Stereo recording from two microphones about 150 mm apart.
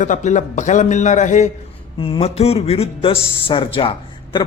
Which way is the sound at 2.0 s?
40° left (ahead or behind).